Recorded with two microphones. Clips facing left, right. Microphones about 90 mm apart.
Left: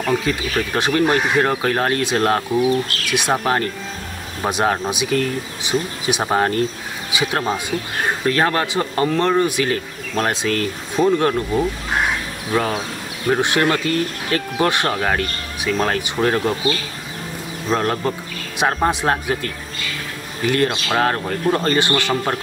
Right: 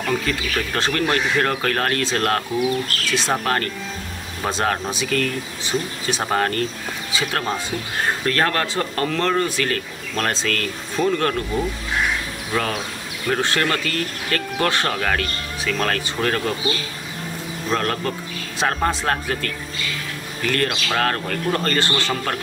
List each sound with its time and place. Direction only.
0.1 s speech: 15° left (ahead or behind)
17.6 s speech: 20° left (ahead or behind)